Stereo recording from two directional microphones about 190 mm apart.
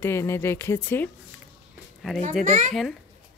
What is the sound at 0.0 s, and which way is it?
Speech, 15° left (ahead or behind).